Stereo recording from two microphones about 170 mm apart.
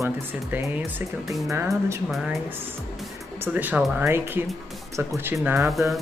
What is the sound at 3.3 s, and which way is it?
Speech, 10° right (ahead or behind).